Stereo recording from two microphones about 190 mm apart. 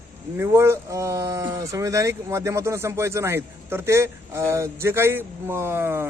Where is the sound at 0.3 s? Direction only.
15° right (ahead or behind).